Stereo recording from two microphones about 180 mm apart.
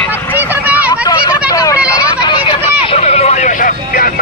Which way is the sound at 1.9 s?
25° left (ahead or behind).